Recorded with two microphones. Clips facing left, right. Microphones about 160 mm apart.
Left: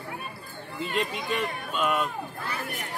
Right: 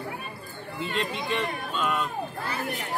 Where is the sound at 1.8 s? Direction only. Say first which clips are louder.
Left 2 dB; 5° left (ahead or behind).